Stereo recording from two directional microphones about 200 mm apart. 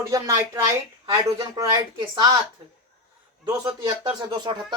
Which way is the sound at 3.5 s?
20° right (ahead or behind).